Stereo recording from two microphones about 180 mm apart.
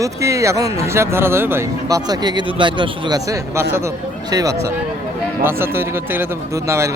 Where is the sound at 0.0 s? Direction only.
15° right (ahead or behind).